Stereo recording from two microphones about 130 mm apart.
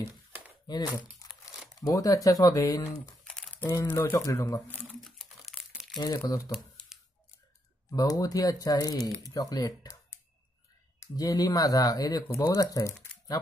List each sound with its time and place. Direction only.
0.7 s speech: 35° left (ahead or behind)
1.2 s crumpling: 30° left (ahead or behind)
1.9 s speech: 25° left (ahead or behind)
3.3 s crumpling: 5° left (ahead or behind)
3.9 s speech: 25° left (ahead or behind)
4.7 s crumpling: 5° left (ahead or behind)
5.9 s speech: 30° left (ahead or behind)
7.9 s speech: 30° left (ahead or behind)
11.0 s speech: 30° left (ahead or behind)